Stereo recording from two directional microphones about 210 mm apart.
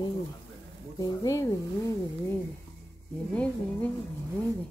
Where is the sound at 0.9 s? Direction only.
15° left (ahead or behind).